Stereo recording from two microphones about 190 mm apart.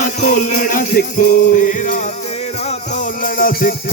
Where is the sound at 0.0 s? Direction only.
40° left (ahead or behind).